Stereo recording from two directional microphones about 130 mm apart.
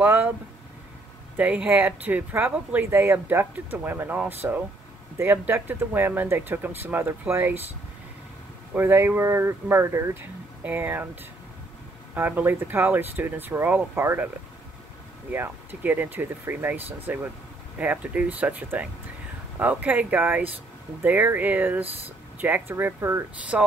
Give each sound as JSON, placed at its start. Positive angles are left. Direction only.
{"t": 0.0, "sound": "speech", "side_deg": -15}
{"t": 1.3, "sound": "speech", "side_deg": -10}
{"t": 8.7, "sound": "speech", "side_deg": -20}
{"t": 12.2, "sound": "speech", "side_deg": -15}
{"t": 15.3, "sound": "speech", "side_deg": -15}